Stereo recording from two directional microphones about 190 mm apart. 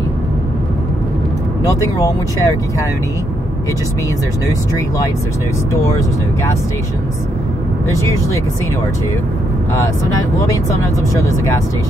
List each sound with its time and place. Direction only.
1.7 s speech: 15° left (ahead or behind)
5.7 s speech: 15° left (ahead or behind)
7.9 s speech: 15° left (ahead or behind)